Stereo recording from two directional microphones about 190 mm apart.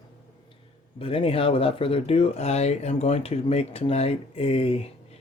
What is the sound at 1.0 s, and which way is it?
Speech, 30° left (ahead or behind).